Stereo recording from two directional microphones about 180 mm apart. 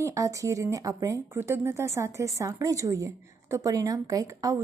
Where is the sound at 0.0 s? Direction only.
15° right (ahead or behind).